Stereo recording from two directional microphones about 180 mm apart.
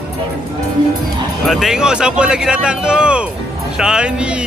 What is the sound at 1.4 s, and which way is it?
Speech, centre (ahead or behind).